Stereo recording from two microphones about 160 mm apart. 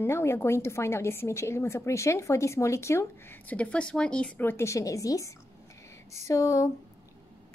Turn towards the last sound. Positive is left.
turn(degrees=20)  # may be behind; listen again after turning